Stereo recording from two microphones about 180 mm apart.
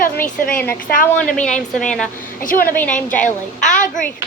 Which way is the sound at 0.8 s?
50° left (ahead or behind).